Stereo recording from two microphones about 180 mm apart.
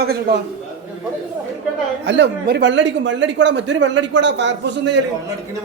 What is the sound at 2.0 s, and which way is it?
Speech, 80° right.